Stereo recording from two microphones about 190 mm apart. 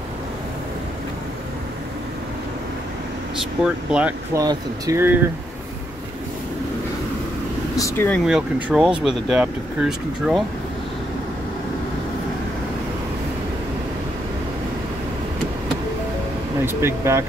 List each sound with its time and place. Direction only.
3.3 s speech: 5° right (ahead or behind)
4.3 s speech: 20° right (ahead or behind)
7.7 s speech: 15° left (ahead or behind)
8.3 s speech: 5° right (ahead or behind)
16.6 s speech: 15° right (ahead or behind)